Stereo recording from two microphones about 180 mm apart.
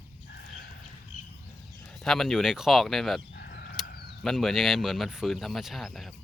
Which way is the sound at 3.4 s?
60° left (ahead or behind).